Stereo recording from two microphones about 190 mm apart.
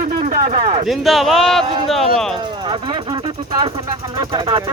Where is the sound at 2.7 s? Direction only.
25° right (ahead or behind).